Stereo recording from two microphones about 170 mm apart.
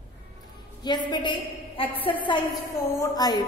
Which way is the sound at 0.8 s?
25° left (ahead or behind).